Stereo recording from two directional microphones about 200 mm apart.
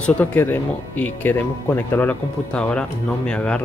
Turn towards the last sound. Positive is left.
turn(degrees=5)  # may be behind; listen again after turning